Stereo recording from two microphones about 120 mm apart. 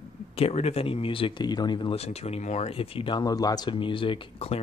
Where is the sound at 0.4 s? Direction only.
60° left (ahead or behind); by 2.0 s 40° left (ahead or behind).